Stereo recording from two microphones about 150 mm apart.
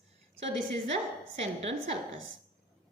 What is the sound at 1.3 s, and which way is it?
Speech, 45° right (ahead or behind).